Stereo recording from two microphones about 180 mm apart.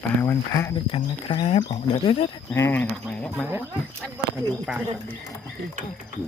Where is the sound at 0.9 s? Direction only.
30° left (ahead or behind).